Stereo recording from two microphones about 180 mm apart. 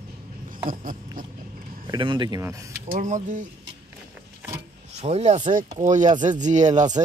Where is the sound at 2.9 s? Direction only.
45° right (ahead or behind).